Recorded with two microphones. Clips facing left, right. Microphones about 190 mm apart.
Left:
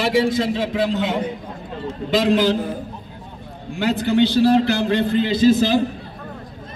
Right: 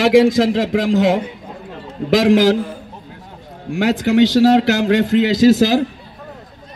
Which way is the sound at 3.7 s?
90° right.